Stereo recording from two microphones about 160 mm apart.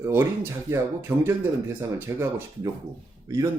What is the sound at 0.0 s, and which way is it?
Speech, 15° right (ahead or behind).